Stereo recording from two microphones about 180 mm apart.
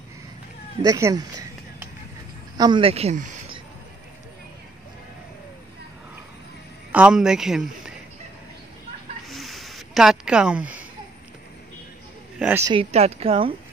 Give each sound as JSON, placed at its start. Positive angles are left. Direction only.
{"t": 0.8, "sound": "a sound", "side_deg": -20}
{"t": 2.5, "sound": "speech", "side_deg": -25}
{"t": 6.9, "sound": "a man's voice", "side_deg": -5}
{"t": 9.3, "sound": "a sound", "side_deg": 0}
{"t": 12.4, "sound": "a man's voice", "side_deg": -10}
{"t": 12.9, "sound": "speech", "side_deg": -35}